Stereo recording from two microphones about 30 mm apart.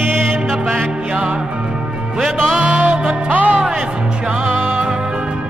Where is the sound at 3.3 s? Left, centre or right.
Right.